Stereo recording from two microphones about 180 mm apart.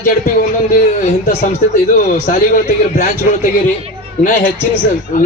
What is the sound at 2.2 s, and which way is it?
Speech, 50° left (ahead or behind).